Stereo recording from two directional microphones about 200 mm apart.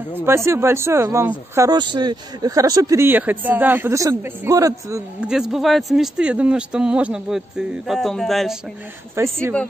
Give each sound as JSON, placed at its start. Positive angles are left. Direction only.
{"t": 0.5, "sound": "speech", "side_deg": -15}
{"t": 5.3, "sound": "speech", "side_deg": 0}
{"t": 9.1, "sound": "speech", "side_deg": -15}